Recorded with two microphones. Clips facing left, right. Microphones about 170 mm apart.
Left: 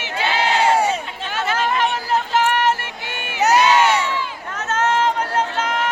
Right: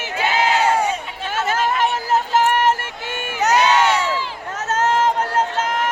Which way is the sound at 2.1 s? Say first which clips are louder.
Right 2 dB; 45° right (ahead or behind).